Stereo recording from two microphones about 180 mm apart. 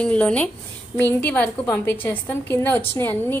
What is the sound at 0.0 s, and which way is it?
A woman's voice, 5° left (ahead or behind).